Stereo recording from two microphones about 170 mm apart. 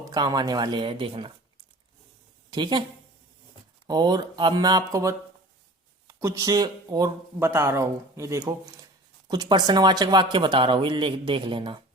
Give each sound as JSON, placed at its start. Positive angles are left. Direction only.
{"t": 0.0, "sound": "speech", "side_deg": -25}
{"t": 2.5, "sound": "speech", "side_deg": -25}
{"t": 3.8, "sound": "speech", "side_deg": -25}